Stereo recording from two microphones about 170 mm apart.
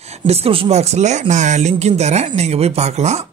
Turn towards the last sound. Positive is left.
turn(degrees=-40)  # may be behind; listen again after turning